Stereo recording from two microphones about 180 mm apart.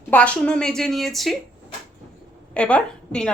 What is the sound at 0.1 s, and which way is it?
A woman's voice, 5° left (ahead or behind).